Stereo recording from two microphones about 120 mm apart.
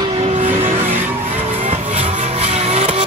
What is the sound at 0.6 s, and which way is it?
Vehicle, 90° right.